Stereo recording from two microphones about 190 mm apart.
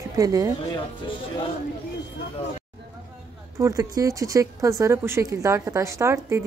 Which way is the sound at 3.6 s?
15° right (ahead or behind).